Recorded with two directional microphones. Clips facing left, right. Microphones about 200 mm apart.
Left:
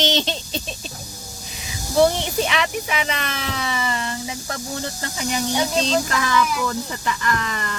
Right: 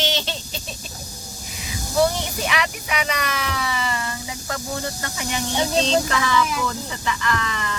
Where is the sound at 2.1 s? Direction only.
25° left (ahead or behind).